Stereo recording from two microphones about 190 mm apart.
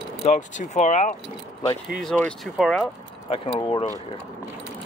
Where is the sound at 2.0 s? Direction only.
5° left (ahead or behind).